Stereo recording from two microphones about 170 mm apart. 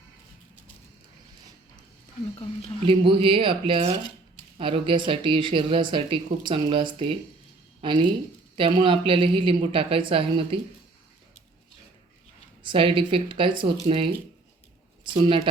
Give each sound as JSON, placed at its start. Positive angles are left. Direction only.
{"t": 2.8, "sound": "a woman's voice", "side_deg": -30}
{"t": 12.6, "sound": "a woman's voice", "side_deg": -30}
{"t": 15.2, "sound": "speech", "side_deg": -25}